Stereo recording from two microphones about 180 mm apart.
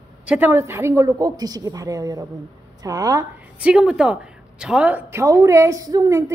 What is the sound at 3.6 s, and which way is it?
A woman's voice, 5° right (ahead or behind).